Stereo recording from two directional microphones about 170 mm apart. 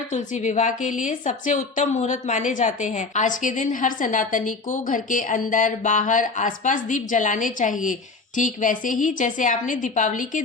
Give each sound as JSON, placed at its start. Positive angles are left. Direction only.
{"t": 0.1, "sound": "a woman's voice", "side_deg": 45}